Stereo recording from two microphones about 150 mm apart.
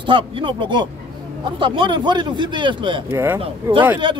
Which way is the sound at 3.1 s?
15° right (ahead or behind).